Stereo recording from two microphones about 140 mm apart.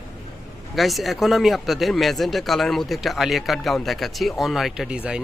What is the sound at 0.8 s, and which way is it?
Speech, centre (ahead or behind).